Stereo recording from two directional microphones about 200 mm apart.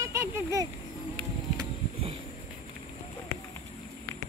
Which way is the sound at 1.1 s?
25° right (ahead or behind).